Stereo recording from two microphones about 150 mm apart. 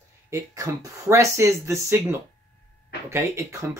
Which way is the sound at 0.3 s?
20° right (ahead or behind).